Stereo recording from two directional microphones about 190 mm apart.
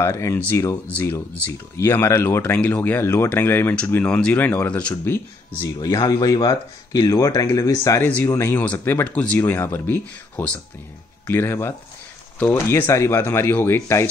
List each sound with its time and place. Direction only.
0.0 s speech: 15° left (ahead or behind)
5.6 s speech: 20° left (ahead or behind)